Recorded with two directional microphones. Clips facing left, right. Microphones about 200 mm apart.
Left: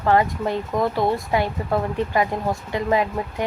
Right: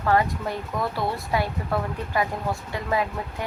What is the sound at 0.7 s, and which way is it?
Speech, 45° left (ahead or behind).